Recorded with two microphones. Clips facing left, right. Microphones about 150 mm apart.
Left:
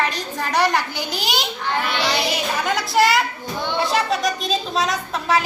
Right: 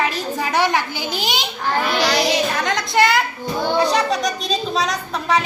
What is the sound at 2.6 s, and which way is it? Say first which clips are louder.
A woman's voice: left 2 dB; 5° left (ahead or behind).